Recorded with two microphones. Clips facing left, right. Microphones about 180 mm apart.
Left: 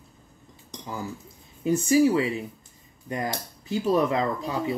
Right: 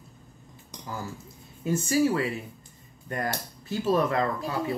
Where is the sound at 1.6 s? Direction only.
15° left (ahead or behind).